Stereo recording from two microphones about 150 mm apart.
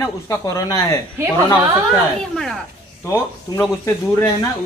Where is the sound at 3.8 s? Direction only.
25° left (ahead or behind).